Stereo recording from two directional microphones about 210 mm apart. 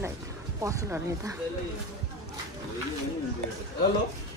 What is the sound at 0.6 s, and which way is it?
Speech, 15° right (ahead or behind).